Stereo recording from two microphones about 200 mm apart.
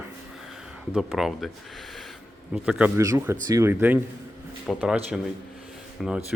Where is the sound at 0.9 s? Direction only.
Centre (ahead or behind).